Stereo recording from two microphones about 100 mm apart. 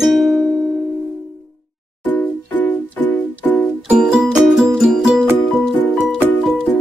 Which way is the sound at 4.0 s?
5° right (ahead or behind).